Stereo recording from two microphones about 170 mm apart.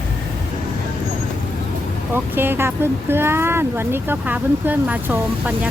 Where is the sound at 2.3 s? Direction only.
10° right (ahead or behind).